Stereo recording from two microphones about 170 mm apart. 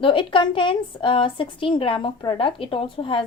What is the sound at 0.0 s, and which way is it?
A woman's voice, 30° left (ahead or behind).